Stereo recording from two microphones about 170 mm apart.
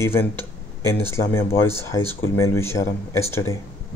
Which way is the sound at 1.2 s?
15° left (ahead or behind).